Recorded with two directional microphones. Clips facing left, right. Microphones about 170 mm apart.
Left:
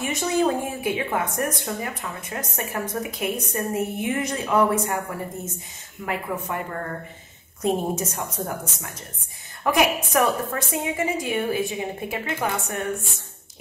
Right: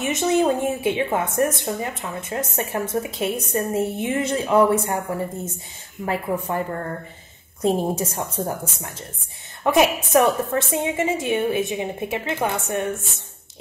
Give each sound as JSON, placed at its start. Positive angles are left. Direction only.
{"t": 0.0, "sound": "a woman's voice", "side_deg": -20}
{"t": 6.0, "sound": "a woman's voice", "side_deg": -30}
{"t": 9.6, "sound": "a sound", "side_deg": -25}
{"t": 10.1, "sound": "a woman's voice", "side_deg": -25}